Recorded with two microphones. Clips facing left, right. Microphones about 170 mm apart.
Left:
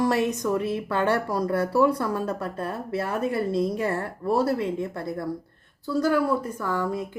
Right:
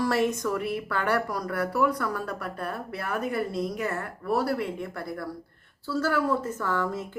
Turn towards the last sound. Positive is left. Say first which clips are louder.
# left 2 dB
turn(degrees=10)  # may be behind; listen again after turning